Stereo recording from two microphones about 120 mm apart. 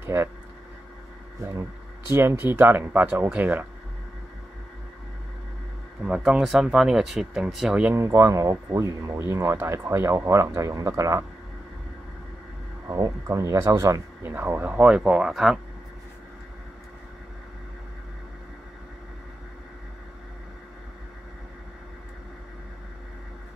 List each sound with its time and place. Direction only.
0.0 s a sound: 20° right (ahead or behind)
1.5 s speech: 25° right (ahead or behind)
6.0 s speech: 10° right (ahead or behind)
7.9 s speech: 25° right (ahead or behind)
12.8 s speech: 30° right (ahead or behind)
14.7 s speech: 10° right (ahead or behind)